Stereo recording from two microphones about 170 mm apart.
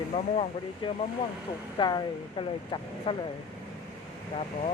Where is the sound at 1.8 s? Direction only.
25° left (ahead or behind).